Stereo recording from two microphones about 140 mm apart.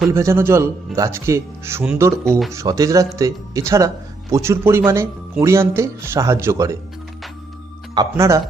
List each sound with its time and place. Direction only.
0.1 s speech: 20° right (ahead or behind)
7.9 s speech: 20° right (ahead or behind)